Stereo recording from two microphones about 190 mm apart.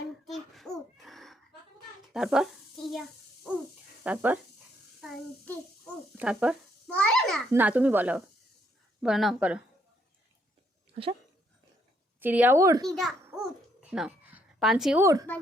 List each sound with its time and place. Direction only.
0.3 s a sound: centre (ahead or behind)
2.1 s speech: centre (ahead or behind)
4.0 s a child's voice: 10° right (ahead or behind)
5.0 s child singing: centre (ahead or behind)
6.1 s a child's voice: 5° right (ahead or behind)
7.5 s a child's voice: 10° right (ahead or behind)
10.9 s speech: 30° right (ahead or behind)
12.2 s a child's voice: 10° right (ahead or behind)
13.9 s a sound: 5° right (ahead or behind)
15.0 s a child's voice: 20° right (ahead or behind)